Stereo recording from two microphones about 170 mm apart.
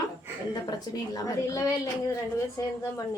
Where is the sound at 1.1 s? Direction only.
20° left (ahead or behind).